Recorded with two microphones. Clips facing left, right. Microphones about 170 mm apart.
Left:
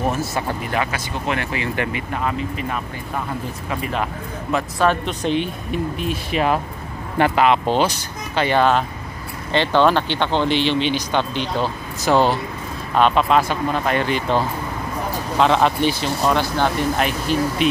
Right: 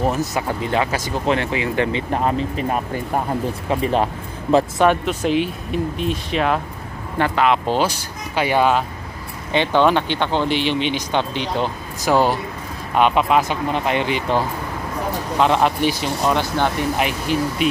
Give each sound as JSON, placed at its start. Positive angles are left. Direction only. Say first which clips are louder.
{"t": 0.0, "sound": "speech", "louder": "right 2 dB", "side_deg": -15}
{"t": 0.9, "sound": "speech", "louder": "right 4 dB", "side_deg": -30}
{"t": 2.1, "sound": "speech", "louder": "right 3 dB", "side_deg": -35}
{"t": 3.8, "sound": "speech", "louder": "right 5 dB", "side_deg": -30}
{"t": 4.8, "sound": "speech", "louder": "right 2 dB", "side_deg": -5}